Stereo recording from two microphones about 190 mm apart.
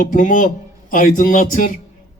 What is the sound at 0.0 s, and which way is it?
A man's voice, 45° left (ahead or behind).